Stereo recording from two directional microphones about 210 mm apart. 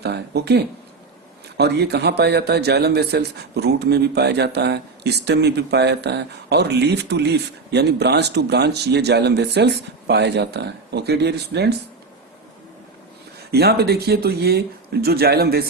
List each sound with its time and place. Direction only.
0.0 s a man's voice: 50° right (ahead or behind)
13.5 s a man's voice: 50° right (ahead or behind)